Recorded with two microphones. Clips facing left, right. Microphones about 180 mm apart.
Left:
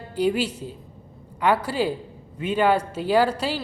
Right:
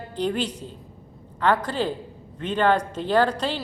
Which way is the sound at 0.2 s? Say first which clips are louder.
Left 3 dB; 10° left (ahead or behind).